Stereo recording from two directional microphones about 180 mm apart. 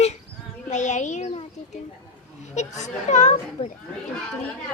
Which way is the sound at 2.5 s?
40° left (ahead or behind).